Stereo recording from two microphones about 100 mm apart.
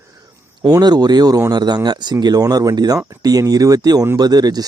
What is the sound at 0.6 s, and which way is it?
Speech, 45° right (ahead or behind).